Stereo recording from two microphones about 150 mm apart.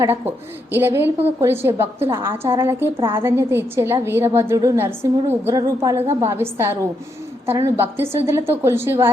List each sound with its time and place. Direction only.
0.7 s a woman's voice: 15° right (ahead or behind)